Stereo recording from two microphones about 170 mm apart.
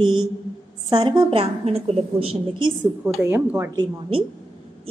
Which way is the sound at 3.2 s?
15° right (ahead or behind).